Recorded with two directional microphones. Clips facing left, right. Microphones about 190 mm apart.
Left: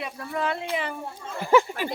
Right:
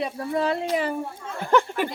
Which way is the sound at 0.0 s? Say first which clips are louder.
Right 5 dB; 30° right (ahead or behind).